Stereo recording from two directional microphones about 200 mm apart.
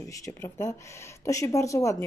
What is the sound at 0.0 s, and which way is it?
Speech, 15° left (ahead or behind).